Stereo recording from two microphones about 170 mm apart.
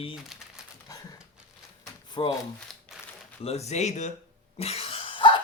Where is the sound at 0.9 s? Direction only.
20° left (ahead or behind).